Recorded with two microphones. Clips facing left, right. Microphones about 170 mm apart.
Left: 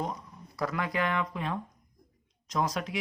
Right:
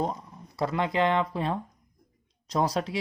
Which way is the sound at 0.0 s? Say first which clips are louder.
Right 5 dB; 25° right (ahead or behind).